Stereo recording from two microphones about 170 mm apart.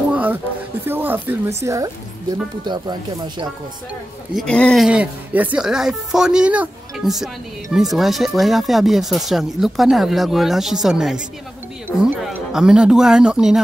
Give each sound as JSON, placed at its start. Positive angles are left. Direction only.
{"t": 0.1, "sound": "music", "side_deg": -10}
{"t": 0.8, "sound": "speech", "side_deg": -10}
{"t": 4.4, "sound": "speech", "side_deg": 5}
{"t": 4.8, "sound": "speech", "side_deg": -10}